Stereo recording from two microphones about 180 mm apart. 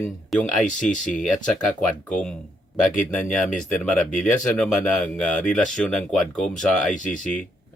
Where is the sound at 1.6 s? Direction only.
5° left (ahead or behind).